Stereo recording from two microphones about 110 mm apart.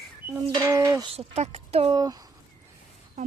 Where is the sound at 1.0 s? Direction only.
70° right (ahead or behind).